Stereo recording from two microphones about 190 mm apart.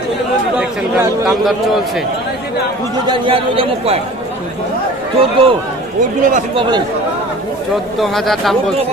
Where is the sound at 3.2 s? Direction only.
30° right (ahead or behind).